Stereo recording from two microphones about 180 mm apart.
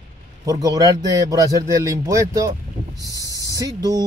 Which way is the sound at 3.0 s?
20° left (ahead or behind).